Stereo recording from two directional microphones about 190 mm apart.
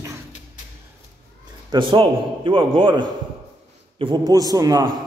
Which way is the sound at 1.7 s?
25° right (ahead or behind).